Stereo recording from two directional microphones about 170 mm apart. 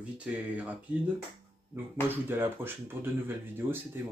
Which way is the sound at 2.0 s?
10° right (ahead or behind).